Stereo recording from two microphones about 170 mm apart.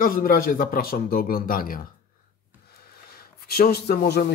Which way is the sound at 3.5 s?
65° left (ahead or behind).